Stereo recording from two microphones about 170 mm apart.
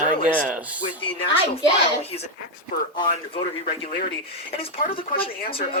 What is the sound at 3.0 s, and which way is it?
Speech, 30° left (ahead or behind).